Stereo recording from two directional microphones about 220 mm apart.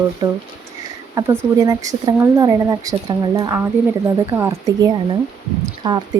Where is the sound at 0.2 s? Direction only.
15° right (ahead or behind).